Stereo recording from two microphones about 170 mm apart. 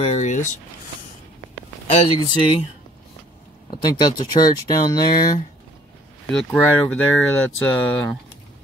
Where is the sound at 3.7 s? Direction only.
25° left (ahead or behind).